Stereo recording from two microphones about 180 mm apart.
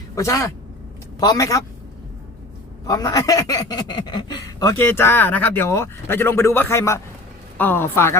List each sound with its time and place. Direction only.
0.2 s a man's voice: 15° left (ahead or behind)
2.8 s a man's voice: 20° left (ahead or behind)